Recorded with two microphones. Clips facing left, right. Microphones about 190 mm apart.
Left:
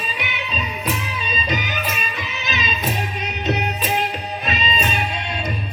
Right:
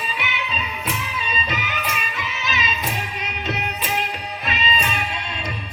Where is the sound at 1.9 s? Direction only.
20° left (ahead or behind).